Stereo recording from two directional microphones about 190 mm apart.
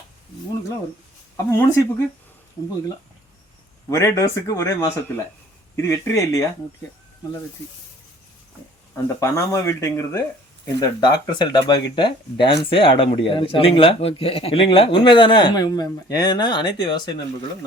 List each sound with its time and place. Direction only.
1.5 s speech: 15° left (ahead or behind)
3.8 s speech: 15° left (ahead or behind)
9.0 s speech: 15° left (ahead or behind)